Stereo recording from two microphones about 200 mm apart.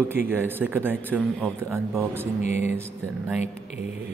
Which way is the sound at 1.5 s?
15° right (ahead or behind).